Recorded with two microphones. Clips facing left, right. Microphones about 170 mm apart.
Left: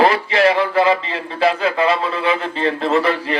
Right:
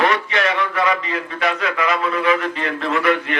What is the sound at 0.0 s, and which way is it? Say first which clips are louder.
A man's voice: left 5 dB; 30° left (ahead or behind).